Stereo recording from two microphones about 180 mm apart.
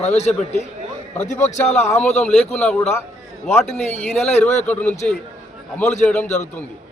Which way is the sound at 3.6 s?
40° left (ahead or behind).